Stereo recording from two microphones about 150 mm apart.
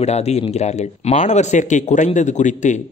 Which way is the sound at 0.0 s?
45° left (ahead or behind).